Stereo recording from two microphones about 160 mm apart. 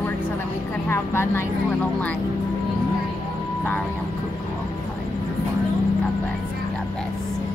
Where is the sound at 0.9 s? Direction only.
15° left (ahead or behind).